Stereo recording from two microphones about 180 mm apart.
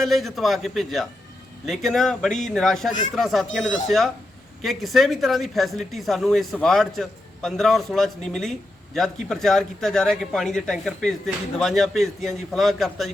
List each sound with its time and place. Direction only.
0.0 s speech: centre (ahead or behind)